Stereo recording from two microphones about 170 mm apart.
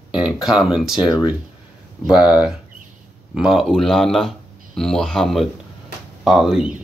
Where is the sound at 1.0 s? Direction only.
20° left (ahead or behind).